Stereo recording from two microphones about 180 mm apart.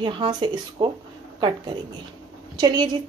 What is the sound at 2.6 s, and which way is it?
Speech, 25° right (ahead or behind).